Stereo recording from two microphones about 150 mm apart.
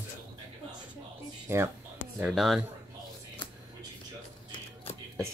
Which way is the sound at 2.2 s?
Centre (ahead or behind).